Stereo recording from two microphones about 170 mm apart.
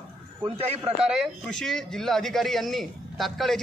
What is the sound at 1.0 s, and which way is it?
A man's voice, centre (ahead or behind).